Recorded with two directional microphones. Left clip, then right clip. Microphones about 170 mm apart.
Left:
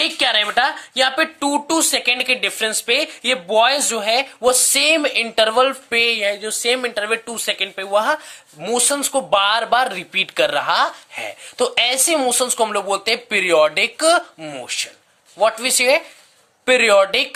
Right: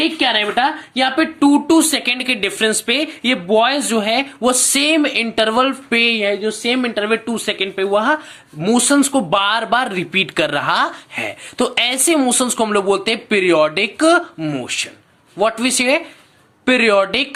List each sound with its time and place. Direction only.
0.0 s speech: 50° left (ahead or behind); by 17.2 s 30° left (ahead or behind)